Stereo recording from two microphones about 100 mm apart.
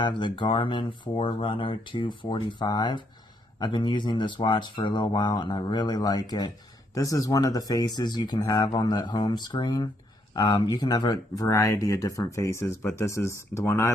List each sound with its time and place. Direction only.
0.0 s speech: 55° left (ahead or behind); by 13.8 s 30° left (ahead or behind)